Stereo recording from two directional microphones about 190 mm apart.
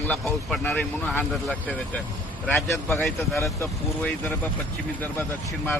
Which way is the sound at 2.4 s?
5° left (ahead or behind).